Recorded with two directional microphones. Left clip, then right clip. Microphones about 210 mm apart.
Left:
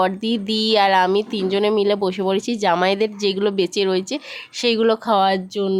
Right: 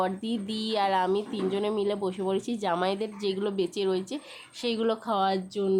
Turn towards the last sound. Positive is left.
turn(degrees=25)  # may be behind; listen again after turning